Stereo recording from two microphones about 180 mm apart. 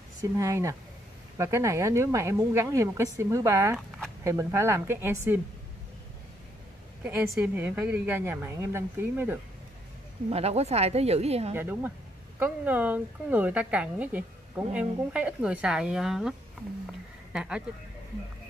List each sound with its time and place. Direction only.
0.2 s a woman's voice: 15° right (ahead or behind)
7.2 s a woman's voice: 10° right (ahead or behind)
10.3 s a woman's voice: 35° right (ahead or behind)
11.5 s a woman's voice: 10° right (ahead or behind)